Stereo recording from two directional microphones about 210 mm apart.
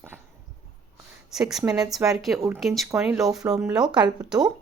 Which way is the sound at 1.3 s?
Centre (ahead or behind).